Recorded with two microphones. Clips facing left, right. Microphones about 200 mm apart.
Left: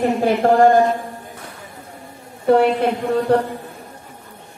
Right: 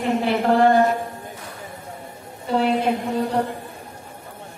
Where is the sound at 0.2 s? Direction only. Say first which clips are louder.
Left 4 dB; 45° left (ahead or behind).